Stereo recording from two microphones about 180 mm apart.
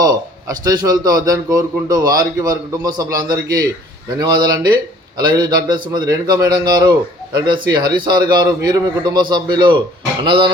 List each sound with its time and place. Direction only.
0.6 s a man's voice: 20° right (ahead or behind)